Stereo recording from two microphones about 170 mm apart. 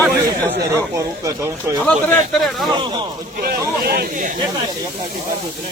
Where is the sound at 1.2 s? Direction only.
20° right (ahead or behind).